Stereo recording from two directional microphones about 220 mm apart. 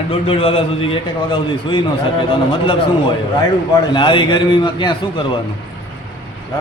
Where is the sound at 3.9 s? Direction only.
20° left (ahead or behind).